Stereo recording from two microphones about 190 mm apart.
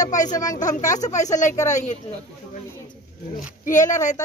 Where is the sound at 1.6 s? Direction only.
40° left (ahead or behind).